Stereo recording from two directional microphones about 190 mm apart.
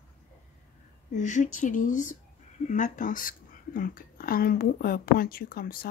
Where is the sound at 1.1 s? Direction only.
40° left (ahead or behind).